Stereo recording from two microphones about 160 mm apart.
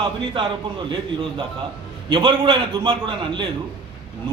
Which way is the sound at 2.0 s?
30° right (ahead or behind).